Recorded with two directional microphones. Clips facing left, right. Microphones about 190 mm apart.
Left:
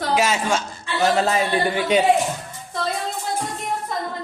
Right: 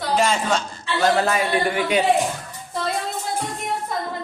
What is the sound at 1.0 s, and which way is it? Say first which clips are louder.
A man's voice: even; 20° left (ahead or behind).